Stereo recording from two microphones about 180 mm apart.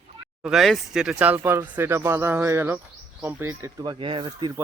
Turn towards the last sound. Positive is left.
turn(degrees=-25)  # may be behind; listen again after turning